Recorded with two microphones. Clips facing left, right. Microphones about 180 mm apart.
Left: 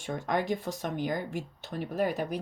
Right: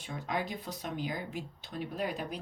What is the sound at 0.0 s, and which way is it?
Speech, 50° left (ahead or behind).